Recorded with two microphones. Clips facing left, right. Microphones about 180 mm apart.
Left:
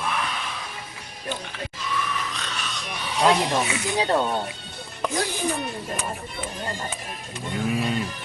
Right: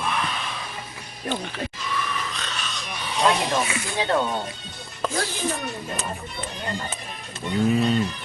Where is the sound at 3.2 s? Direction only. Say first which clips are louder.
Left 1 dB; 15° left (ahead or behind).